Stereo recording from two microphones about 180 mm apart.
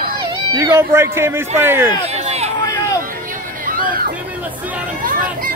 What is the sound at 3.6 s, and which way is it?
Run, 50° right (ahead or behind).